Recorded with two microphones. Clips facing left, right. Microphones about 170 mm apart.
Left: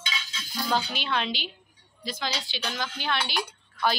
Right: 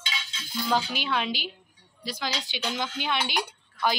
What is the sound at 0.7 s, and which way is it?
A woman's voice, 5° right (ahead or behind).